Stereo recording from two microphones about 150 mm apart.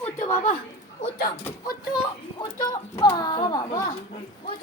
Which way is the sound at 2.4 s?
25° left (ahead or behind).